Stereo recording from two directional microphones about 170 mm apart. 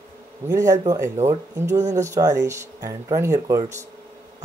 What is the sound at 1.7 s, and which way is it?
Speech, 45° right (ahead or behind).